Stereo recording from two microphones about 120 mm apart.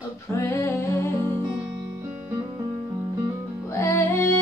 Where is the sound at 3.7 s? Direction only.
25° left (ahead or behind).